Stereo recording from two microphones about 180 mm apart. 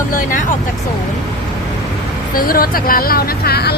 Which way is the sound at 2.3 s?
55° left (ahead or behind).